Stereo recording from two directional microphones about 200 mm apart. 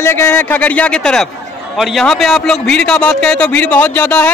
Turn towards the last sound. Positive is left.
turn(degrees=10)  # may be behind; listen again after turning